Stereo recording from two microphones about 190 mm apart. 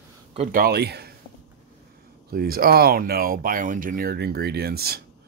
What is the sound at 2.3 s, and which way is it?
Speech, 50° right (ahead or behind).